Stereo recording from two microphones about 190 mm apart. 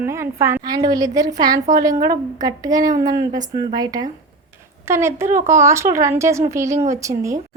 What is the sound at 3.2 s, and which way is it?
Speech, 40° right (ahead or behind).